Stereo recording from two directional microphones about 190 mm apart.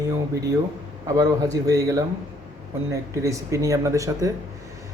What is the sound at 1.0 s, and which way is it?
Speech, 20° right (ahead or behind).